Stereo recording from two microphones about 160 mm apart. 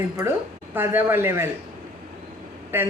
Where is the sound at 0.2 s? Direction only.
15° right (ahead or behind).